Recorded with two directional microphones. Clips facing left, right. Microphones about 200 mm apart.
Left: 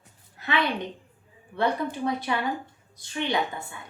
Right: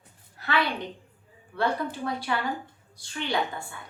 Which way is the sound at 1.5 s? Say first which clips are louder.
Left 2 dB; 20° left (ahead or behind).